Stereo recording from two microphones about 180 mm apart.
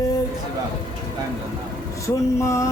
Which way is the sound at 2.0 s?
15° left (ahead or behind).